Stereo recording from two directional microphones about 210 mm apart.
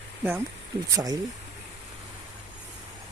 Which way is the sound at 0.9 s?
15° right (ahead or behind).